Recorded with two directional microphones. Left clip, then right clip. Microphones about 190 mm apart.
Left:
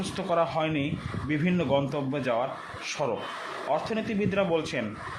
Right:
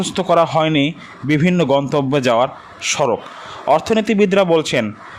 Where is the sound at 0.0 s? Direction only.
50° right (ahead or behind).